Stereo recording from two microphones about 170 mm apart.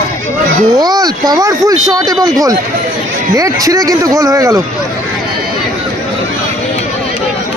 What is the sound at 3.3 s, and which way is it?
Speech, 20° right (ahead or behind).